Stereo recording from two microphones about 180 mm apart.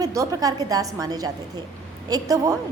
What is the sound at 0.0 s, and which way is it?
A woman's voice, 15° right (ahead or behind).